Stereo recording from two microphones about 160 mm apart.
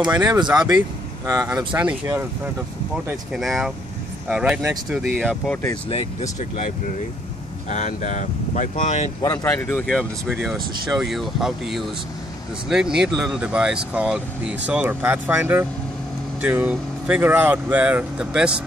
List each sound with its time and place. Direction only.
0.0 s speech: 25° right (ahead or behind)
1.7 s speech: 10° right (ahead or behind)
3.3 s speech: centre (ahead or behind)
5.2 s speech: 5° left (ahead or behind)
7.7 s speech: 50° left (ahead or behind)
9.2 s speech: 20° left (ahead or behind)
9.5 s speech: 10° left (ahead or behind)
9.8 s speech: 5° right (ahead or behind)